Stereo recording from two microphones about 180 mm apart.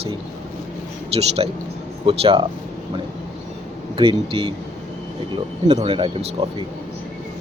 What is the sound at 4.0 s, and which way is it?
Speech, 30° right (ahead or behind).